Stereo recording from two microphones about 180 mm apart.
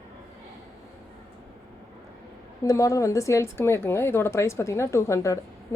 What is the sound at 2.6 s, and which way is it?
A woman's voice, 20° left (ahead or behind).